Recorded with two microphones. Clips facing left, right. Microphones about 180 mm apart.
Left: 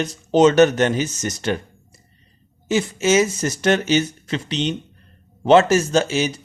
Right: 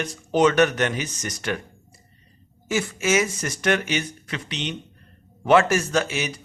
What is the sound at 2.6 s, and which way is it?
Speech, 20° left (ahead or behind).